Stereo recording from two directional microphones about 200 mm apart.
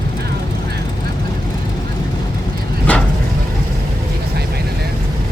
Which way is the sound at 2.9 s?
5° left (ahead or behind).